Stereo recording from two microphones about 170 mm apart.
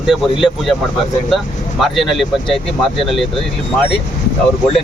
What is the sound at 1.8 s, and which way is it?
Speech, centre (ahead or behind).